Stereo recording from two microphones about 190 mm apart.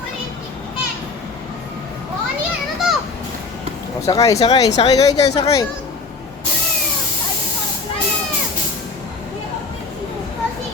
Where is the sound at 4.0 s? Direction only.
15° left (ahead or behind).